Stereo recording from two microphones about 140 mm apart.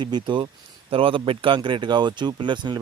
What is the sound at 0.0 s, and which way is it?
Speech, 35° right (ahead or behind).